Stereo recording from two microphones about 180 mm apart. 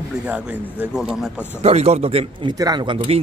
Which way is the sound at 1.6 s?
35° right (ahead or behind).